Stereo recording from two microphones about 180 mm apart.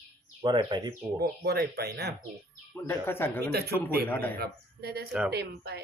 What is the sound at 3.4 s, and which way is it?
Speech, 65° right (ahead or behind).